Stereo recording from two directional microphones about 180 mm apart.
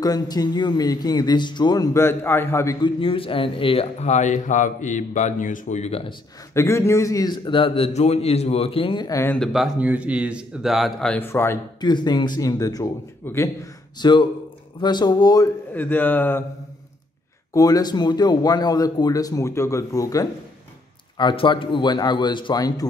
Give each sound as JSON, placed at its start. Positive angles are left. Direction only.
{"t": 0.0, "sound": "a man's voice", "side_deg": 20}
{"t": 3.0, "sound": "speech", "side_deg": 30}
{"t": 6.5, "sound": "a man's voice", "side_deg": 15}
{"t": 9.4, "sound": "speech", "side_deg": 0}
{"t": 11.9, "sound": "a man's voice", "side_deg": 25}
{"t": 15.7, "sound": "speech", "side_deg": 10}
{"t": 17.6, "sound": "a man's voice", "side_deg": 20}